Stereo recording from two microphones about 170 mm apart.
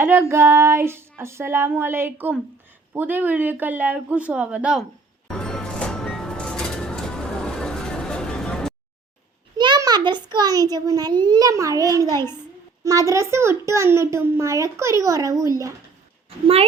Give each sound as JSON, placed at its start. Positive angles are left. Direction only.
{"t": 0.0, "sound": "a child's voice", "side_deg": -15}
{"t": 5.3, "sound": "music", "side_deg": 5}
{"t": 9.6, "sound": "a child's voice", "side_deg": -25}